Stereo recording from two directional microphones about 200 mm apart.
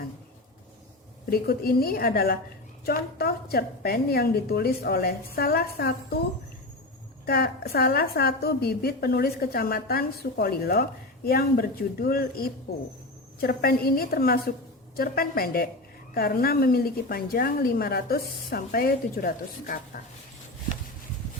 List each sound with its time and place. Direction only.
1.3 s a woman's voice: 50° left (ahead or behind)
7.3 s a woman's voice: 50° left (ahead or behind)